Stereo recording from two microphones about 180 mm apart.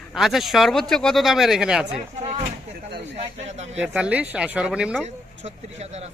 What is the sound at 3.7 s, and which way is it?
Speech, 5° right (ahead or behind).